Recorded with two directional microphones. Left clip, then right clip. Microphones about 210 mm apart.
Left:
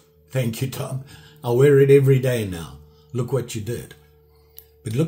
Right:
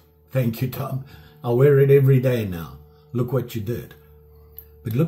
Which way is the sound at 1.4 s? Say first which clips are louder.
Left 1 dB; 20° left (ahead or behind).